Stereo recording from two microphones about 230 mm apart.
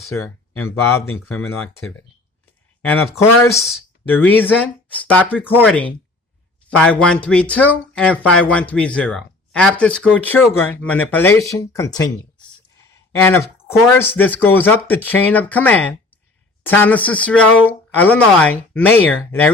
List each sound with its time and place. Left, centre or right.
0.6 s speech: left
1.5 s speech: centre
2.9 s speech: centre
3.5 s speech: centre
13.2 s speech: centre